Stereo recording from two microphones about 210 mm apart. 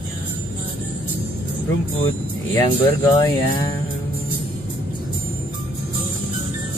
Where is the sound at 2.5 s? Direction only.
15° left (ahead or behind).